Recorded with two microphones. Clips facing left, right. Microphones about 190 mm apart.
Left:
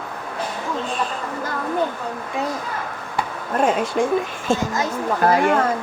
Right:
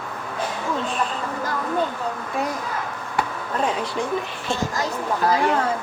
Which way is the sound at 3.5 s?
50° left (ahead or behind).